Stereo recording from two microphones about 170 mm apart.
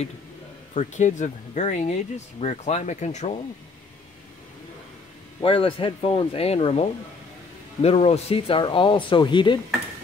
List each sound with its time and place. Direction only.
0.7 s speech: 45° left (ahead or behind)
5.4 s speech: 30° left (ahead or behind)